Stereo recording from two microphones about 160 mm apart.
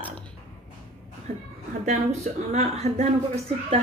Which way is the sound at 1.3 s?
45° right (ahead or behind).